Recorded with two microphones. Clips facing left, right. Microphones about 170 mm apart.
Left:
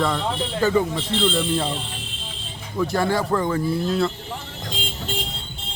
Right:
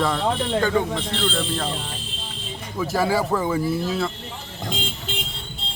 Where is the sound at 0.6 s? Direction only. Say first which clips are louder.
Left 2 dB; 5° left (ahead or behind).